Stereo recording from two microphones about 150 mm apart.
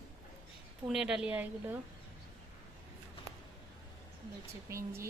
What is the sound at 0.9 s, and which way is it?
Speech, 5° right (ahead or behind).